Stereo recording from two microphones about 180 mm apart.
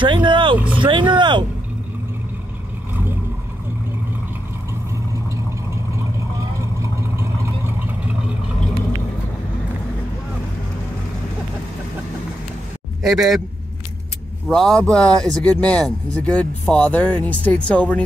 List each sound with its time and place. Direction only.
0.0 s speech: 25° right (ahead or behind)
0.7 s vehicle: 25° right (ahead or behind)
6.6 s vehicle: 15° right (ahead or behind)
13.1 s speech: centre (ahead or behind)
14.5 s speech: 5° left (ahead or behind)